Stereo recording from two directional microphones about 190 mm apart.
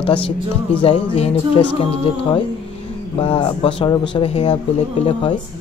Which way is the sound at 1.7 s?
25° left (ahead or behind).